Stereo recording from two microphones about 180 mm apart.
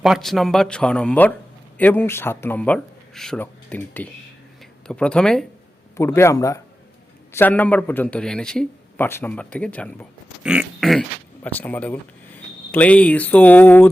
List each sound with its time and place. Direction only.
0.0 s a man's voice: centre (ahead or behind)
6.0 s a man's voice: 15° left (ahead or behind)
10.4 s a man's voice: 5° right (ahead or behind); by 13.8 s 10° left (ahead or behind)